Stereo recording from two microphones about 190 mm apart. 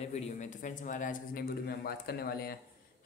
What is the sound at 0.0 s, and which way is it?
A man's voice, 35° left (ahead or behind).